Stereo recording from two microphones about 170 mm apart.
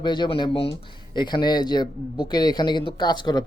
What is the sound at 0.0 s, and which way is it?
Speech, 25° left (ahead or behind).